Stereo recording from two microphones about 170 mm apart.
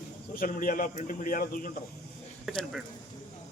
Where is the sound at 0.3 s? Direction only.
55° left (ahead or behind).